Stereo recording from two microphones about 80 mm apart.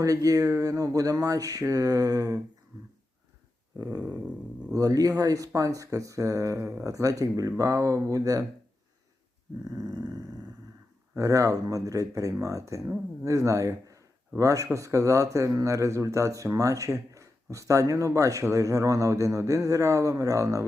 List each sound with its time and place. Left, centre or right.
0.0 s a man's voice: right
3.8 s a man's voice: right
4.0 s a sound: centre
4.7 s a man's voice: right
9.6 s a man's voice: right
11.1 s a man's voice: right